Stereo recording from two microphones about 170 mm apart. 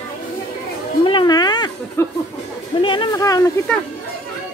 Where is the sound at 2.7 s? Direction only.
30° left (ahead or behind).